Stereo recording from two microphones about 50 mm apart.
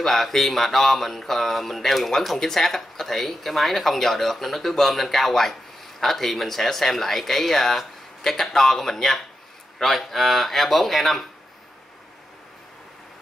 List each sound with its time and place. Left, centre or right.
0.0 s speech: centre